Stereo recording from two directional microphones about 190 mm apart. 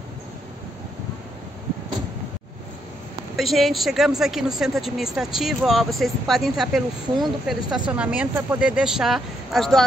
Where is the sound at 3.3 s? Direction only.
Centre (ahead or behind).